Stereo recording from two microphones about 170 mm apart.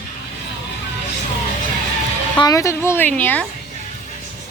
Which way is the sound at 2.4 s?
20° left (ahead or behind).